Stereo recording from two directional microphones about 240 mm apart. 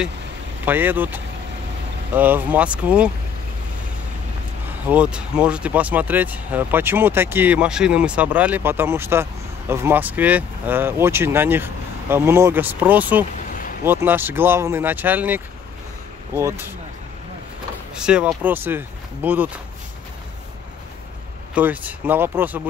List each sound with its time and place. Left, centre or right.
0.7 s speech: centre
4.8 s speech: centre
17.9 s speech: centre
21.5 s speech: centre